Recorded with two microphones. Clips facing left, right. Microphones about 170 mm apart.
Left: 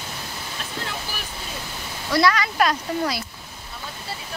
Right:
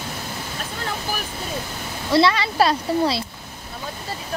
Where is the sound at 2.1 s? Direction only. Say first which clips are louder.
Right 2 dB; 25° right (ahead or behind).